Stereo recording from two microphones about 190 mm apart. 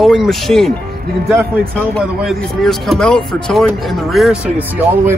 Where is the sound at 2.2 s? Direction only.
Centre (ahead or behind).